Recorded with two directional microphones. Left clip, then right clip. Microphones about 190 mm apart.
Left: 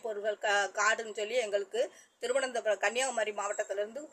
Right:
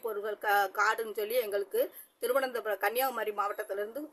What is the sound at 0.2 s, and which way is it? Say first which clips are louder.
A woman's voice: right 1 dB; 30° right (ahead or behind).